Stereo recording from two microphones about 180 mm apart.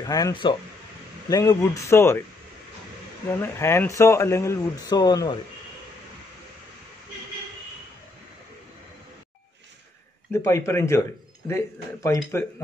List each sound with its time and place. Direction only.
0.0 s a man's voice: 20° left (ahead or behind)
3.3 s a man's voice: 15° left (ahead or behind)
10.3 s a man's voice: 15° left (ahead or behind)